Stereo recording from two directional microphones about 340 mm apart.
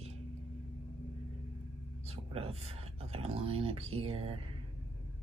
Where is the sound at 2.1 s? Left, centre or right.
Centre.